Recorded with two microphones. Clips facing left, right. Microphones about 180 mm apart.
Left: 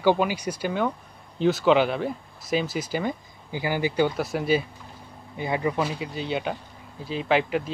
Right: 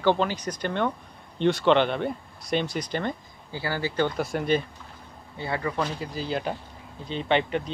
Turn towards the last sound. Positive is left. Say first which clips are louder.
# left 1 dB
turn(degrees=5)  # may be behind; listen again after turning